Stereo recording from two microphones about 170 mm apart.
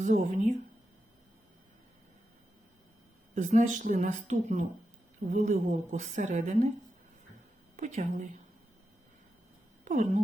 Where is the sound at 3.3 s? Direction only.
45° right (ahead or behind).